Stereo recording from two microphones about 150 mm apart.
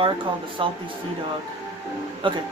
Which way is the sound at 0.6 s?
35° right (ahead or behind).